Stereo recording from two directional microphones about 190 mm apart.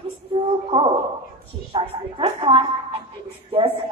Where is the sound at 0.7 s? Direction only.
25° right (ahead or behind).